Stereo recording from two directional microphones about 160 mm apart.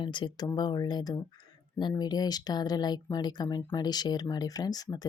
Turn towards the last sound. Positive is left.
turn(degrees=25)  # may be behind; listen again after turning